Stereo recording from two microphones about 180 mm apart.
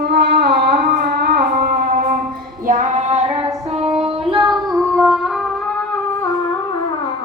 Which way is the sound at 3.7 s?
35° right (ahead or behind).